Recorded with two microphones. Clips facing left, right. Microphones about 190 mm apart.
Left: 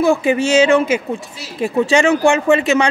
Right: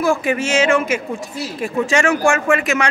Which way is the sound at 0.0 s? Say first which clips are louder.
Left 4 dB; 25° left (ahead or behind).